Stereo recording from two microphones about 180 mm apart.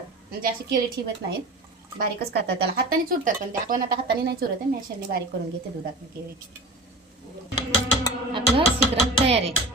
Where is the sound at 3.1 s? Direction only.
50° right (ahead or behind).